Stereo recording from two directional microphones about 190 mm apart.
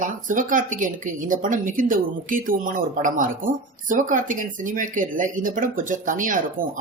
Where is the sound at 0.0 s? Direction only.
45° right (ahead or behind).